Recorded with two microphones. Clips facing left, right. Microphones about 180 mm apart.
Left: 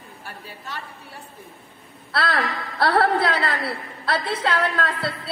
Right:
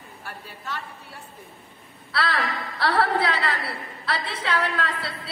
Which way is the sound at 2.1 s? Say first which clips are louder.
Left 2 dB; 45° left (ahead or behind).